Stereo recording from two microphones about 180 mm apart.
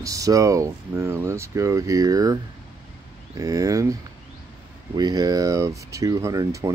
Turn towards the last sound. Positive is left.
turn(degrees=-20)  # may be behind; listen again after turning